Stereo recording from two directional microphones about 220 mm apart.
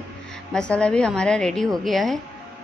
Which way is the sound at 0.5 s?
5° left (ahead or behind).